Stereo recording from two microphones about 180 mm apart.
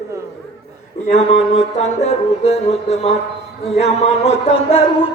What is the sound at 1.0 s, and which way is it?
Music, 35° left (ahead or behind).